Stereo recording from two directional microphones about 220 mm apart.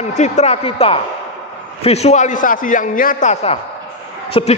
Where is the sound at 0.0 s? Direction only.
30° left (ahead or behind).